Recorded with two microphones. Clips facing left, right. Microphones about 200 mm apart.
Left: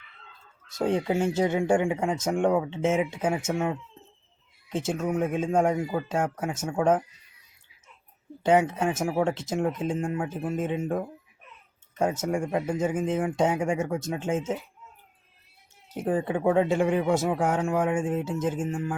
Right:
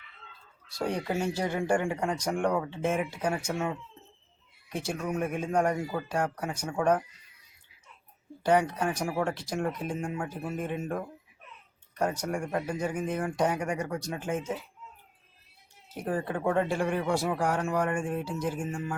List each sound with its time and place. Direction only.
0.8 s speech: 20° left (ahead or behind)
6.2 s speech: centre (ahead or behind)
6.7 s speech: 15° left (ahead or behind)
8.4 s speech: 25° left (ahead or behind)
12.3 s speech: 10° left (ahead or behind)
16.0 s speech: 15° left (ahead or behind)
18.6 s speech: 5° left (ahead or behind)